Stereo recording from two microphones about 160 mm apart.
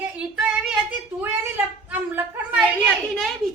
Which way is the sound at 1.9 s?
10° right (ahead or behind).